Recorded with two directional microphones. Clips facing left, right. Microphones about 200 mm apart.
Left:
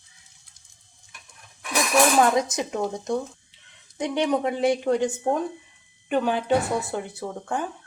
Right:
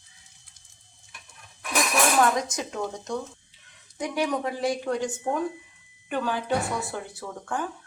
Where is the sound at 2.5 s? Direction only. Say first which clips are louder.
Left 4 dB; 20° left (ahead or behind).